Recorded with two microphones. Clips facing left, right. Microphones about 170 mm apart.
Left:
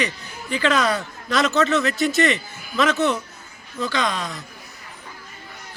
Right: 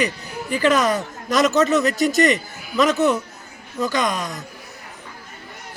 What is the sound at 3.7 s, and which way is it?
Speech, 15° right (ahead or behind).